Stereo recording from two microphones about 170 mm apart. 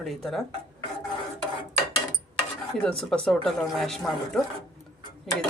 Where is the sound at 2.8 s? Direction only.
5° left (ahead or behind).